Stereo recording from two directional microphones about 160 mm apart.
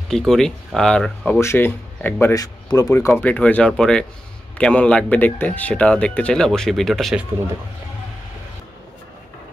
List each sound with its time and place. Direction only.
0.1 s speech: 5° left (ahead or behind); by 3.1 s 20° left (ahead or behind)
3.2 s speech: 10° left (ahead or behind)